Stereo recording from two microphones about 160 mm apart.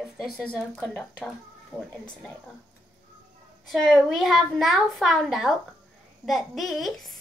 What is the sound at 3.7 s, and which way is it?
A child's voice, centre (ahead or behind).